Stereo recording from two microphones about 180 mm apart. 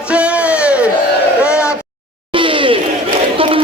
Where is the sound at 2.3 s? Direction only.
30° right (ahead or behind).